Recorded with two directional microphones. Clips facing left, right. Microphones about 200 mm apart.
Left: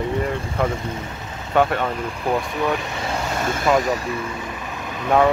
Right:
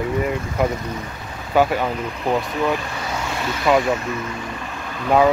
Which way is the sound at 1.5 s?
5° right (ahead or behind).